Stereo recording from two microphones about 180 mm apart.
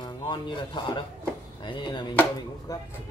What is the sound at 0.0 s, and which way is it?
Speech, 25° left (ahead or behind).